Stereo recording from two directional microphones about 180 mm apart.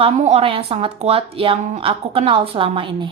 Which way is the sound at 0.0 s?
35° right (ahead or behind).